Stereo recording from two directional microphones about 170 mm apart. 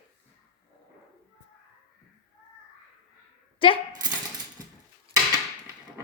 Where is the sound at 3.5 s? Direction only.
30° left (ahead or behind).